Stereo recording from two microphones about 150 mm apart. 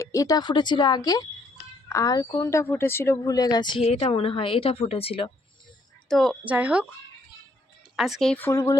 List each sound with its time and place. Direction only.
0.0 s a woman's voice: 20° left (ahead or behind); by 5.3 s 40° left (ahead or behind)
6.1 s a woman's voice: centre (ahead or behind)
6.4 s speech: 10° right (ahead or behind)
7.9 s speech: centre (ahead or behind)
8.4 s a woman's voice: 20° left (ahead or behind)